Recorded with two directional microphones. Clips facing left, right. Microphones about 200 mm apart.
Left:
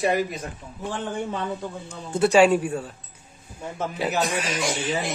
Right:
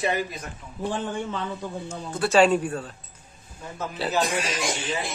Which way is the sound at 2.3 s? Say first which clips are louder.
Even; 10° left (ahead or behind).